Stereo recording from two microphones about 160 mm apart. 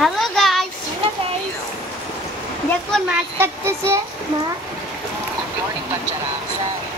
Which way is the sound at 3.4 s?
15° right (ahead or behind).